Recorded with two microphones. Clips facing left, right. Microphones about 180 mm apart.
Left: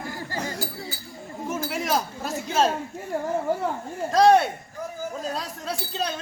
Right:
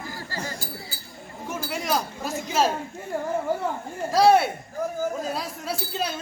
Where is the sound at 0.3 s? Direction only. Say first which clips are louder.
Left 3 dB; 20° left (ahead or behind).